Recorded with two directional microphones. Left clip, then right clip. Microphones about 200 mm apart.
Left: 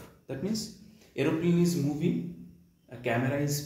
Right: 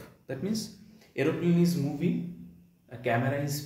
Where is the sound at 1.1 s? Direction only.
10° right (ahead or behind).